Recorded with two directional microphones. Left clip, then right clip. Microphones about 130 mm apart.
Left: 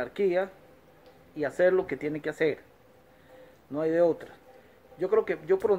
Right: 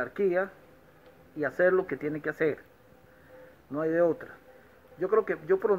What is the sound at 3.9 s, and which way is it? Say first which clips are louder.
Speech: left 1 dB; 15° left (ahead or behind).